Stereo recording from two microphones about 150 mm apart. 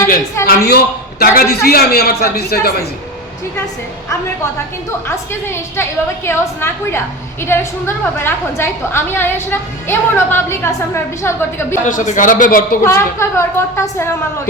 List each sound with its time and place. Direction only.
0.4 s a man's voice: 85° left
5.0 s a woman's voice: 15° left (ahead or behind)
11.9 s a man's voice: 60° left (ahead or behind)
12.8 s a woman's voice: 15° left (ahead or behind)